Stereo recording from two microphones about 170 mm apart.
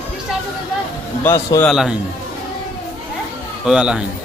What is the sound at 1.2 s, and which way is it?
Speech, 15° left (ahead or behind).